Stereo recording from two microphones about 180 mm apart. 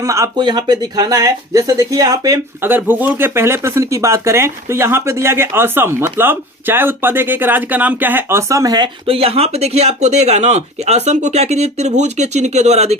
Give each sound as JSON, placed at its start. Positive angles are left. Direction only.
{"t": 0.0, "sound": "speech", "side_deg": -15}